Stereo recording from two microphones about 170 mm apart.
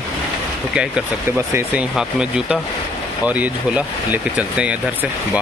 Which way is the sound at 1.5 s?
10° right (ahead or behind).